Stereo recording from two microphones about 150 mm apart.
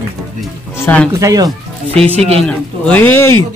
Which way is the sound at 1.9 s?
10° left (ahead or behind).